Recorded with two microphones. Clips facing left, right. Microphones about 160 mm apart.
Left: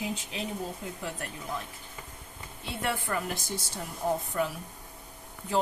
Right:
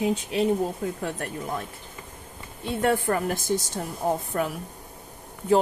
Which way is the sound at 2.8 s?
45° right (ahead or behind).